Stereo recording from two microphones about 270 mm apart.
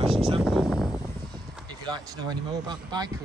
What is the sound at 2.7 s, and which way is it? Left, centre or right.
Speech, centre.